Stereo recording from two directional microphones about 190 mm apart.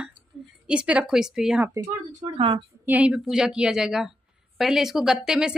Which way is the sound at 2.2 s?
25° right (ahead or behind).